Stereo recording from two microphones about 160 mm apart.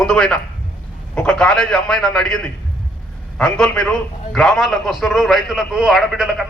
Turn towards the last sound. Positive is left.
turn(degrees=0)  # may be behind; listen again after turning